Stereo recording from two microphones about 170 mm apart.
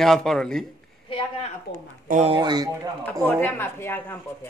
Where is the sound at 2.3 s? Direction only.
25° right (ahead or behind).